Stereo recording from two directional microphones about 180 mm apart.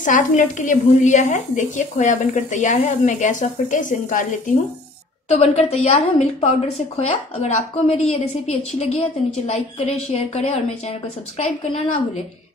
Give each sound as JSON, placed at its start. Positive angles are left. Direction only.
{"t": 0.0, "sound": "a woman's voice", "side_deg": 45}